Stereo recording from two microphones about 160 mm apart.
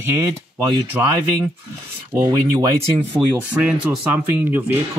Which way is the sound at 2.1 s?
20° right (ahead or behind).